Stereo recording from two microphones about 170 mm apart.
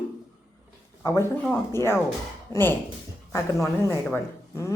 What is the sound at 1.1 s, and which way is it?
A woman's voice, 15° left (ahead or behind).